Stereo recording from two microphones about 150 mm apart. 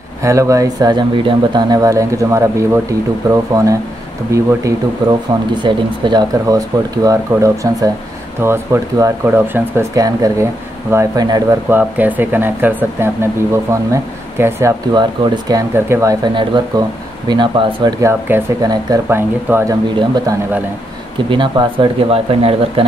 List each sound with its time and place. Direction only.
0.2 s speech: 20° right (ahead or behind)
11.7 s speech: 10° right (ahead or behind)
16.3 s speech: 30° right (ahead or behind)
19.0 s speech: 15° right (ahead or behind)
21.3 s speech: 35° right (ahead or behind)